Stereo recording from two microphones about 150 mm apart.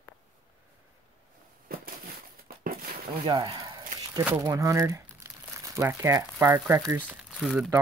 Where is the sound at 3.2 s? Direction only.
30° right (ahead or behind).